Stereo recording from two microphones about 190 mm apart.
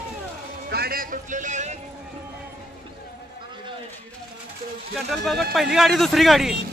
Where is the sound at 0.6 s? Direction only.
55° right (ahead or behind); by 1.8 s 40° right (ahead or behind).